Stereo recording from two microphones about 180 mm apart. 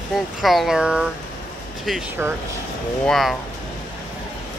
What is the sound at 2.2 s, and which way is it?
Speech, 15° right (ahead or behind).